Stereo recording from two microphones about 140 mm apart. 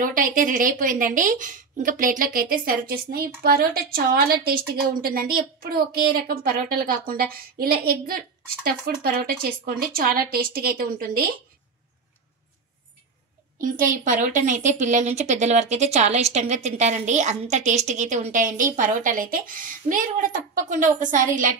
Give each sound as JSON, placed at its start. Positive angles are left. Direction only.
{"t": 0.0, "sound": "a woman's voice", "side_deg": -75}
{"t": 13.6, "sound": "speech", "side_deg": -75}